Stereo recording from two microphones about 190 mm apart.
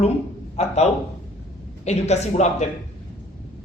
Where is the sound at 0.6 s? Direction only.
35° left (ahead or behind).